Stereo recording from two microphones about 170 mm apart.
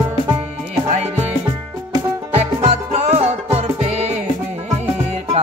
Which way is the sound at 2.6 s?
40° right (ahead or behind).